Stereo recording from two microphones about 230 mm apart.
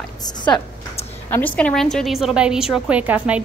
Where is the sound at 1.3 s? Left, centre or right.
Centre.